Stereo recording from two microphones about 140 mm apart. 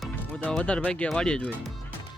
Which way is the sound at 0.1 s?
5° left (ahead or behind).